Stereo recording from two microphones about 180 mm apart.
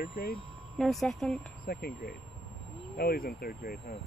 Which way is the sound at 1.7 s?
60° left (ahead or behind).